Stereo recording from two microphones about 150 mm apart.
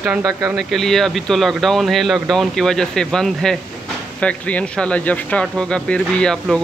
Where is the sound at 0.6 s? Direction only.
Centre (ahead or behind).